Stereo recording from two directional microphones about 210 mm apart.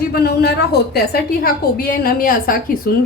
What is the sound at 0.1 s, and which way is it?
A woman's voice, 50° left (ahead or behind).